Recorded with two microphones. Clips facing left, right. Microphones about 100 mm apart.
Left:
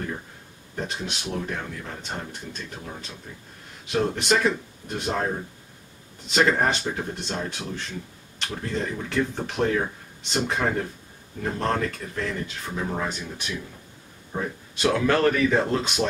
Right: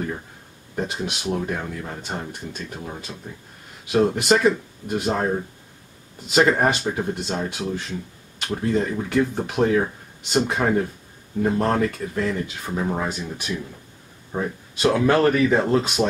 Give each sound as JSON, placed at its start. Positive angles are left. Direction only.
{"t": 0.7, "sound": "speech", "side_deg": -5}
{"t": 3.3, "sound": "speech", "side_deg": -15}
{"t": 3.8, "sound": "speech", "side_deg": -5}